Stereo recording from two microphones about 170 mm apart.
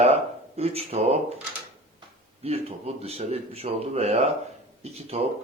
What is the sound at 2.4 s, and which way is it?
Speech, 35° right (ahead or behind).